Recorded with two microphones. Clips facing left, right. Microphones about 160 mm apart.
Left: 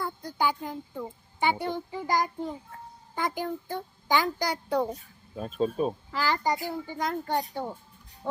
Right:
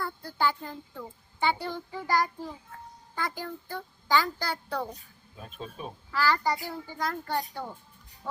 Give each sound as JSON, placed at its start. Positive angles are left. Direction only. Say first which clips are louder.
{"t": 0.0, "sound": "a child's voice", "louder": "left 1 dB", "side_deg": 15}
{"t": 5.4, "sound": "speech", "louder": "left 13 dB", "side_deg": 35}
{"t": 6.1, "sound": "a child's voice", "louder": "even", "side_deg": 20}